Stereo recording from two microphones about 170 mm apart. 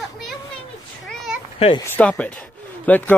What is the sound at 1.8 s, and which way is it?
Speech, 10° left (ahead or behind).